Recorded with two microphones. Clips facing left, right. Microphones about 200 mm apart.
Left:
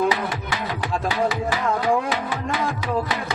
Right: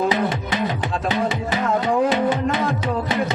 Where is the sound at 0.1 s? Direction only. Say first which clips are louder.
Right 4 dB; 20° right (ahead or behind).